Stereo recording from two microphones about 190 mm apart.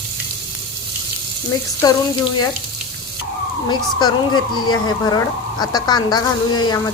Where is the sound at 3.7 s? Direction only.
20° left (ahead or behind).